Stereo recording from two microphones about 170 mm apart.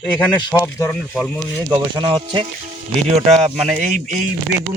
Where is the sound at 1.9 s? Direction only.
30° right (ahead or behind).